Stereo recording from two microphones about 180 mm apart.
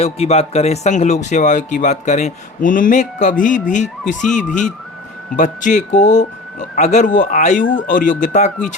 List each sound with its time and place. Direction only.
0.0 s speech: 35° left (ahead or behind)
7.6 s speech: 90° left
7.9 s speech: 45° left (ahead or behind)